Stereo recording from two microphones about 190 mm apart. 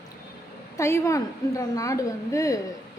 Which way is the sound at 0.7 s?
15° left (ahead or behind).